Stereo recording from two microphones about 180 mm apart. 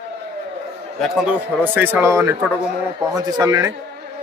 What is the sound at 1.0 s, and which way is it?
A man's voice, 5° right (ahead or behind).